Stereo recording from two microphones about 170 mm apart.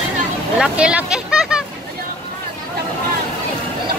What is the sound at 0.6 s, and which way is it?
Speech, 5° right (ahead or behind).